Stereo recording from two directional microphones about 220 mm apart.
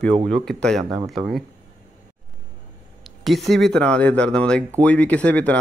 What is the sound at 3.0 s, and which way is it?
Speech, centre (ahead or behind).